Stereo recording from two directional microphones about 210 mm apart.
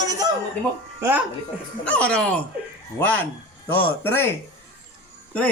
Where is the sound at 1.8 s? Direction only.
5° left (ahead or behind).